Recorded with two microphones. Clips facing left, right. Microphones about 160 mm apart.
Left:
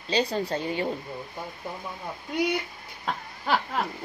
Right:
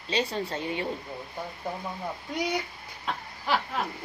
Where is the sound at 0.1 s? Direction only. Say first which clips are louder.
Left 3 dB; 35° left (ahead or behind).